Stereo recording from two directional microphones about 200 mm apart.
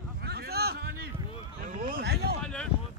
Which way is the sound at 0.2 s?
55° right (ahead or behind).